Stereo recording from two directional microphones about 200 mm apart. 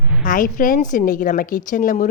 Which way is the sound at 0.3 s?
40° left (ahead or behind).